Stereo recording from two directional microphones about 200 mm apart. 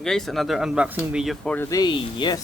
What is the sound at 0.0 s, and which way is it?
Speech, centre (ahead or behind).